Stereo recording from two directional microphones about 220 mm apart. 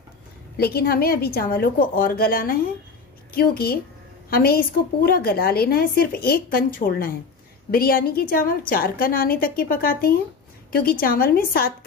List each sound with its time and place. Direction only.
0.6 s a woman's voice: 45° left (ahead or behind)